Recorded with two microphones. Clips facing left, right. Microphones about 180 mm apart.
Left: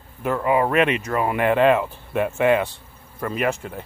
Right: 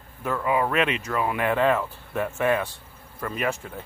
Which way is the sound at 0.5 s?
50° left (ahead or behind).